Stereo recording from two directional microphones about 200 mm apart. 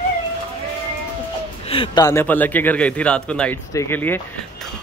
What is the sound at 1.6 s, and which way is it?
A man's voice, 25° left (ahead or behind).